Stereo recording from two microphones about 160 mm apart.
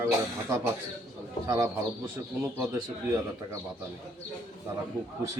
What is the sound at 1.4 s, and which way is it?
Speech, 15° right (ahead or behind).